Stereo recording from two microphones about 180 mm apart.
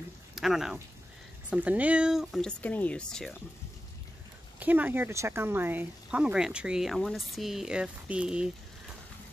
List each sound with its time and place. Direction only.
0.4 s speech: centre (ahead or behind)
4.6 s speech: 10° right (ahead or behind)